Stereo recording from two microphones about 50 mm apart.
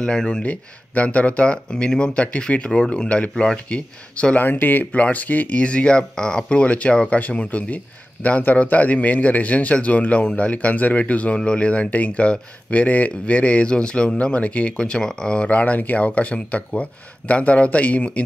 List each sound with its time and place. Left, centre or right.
0.0 s speech: centre
0.4 s speech: left
4.4 s speech: left